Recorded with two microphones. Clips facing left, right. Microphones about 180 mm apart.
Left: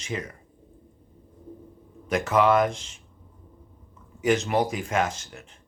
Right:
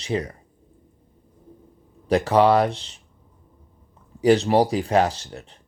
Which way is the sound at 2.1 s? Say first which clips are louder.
Right 4 dB; 35° right (ahead or behind).